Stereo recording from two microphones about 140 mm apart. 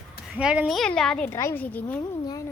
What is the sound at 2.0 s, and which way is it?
Speech, 25° left (ahead or behind).